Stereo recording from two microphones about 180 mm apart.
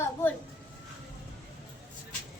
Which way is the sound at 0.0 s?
10° left (ahead or behind).